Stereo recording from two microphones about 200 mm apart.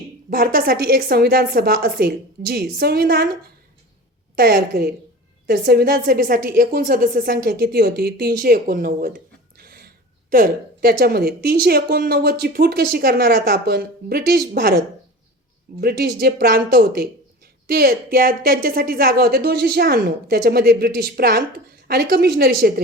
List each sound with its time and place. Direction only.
0.3 s a woman's voice: 50° right (ahead or behind)
4.4 s a woman's voice: 50° right (ahead or behind)
15.8 s a woman's voice: 50° right (ahead or behind)